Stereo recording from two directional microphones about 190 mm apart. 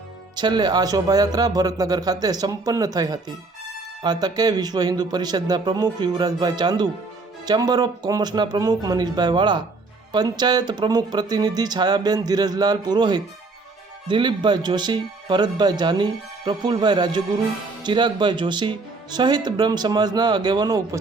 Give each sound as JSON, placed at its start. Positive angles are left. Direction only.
{"t": 0.3, "sound": "speech", "side_deg": -20}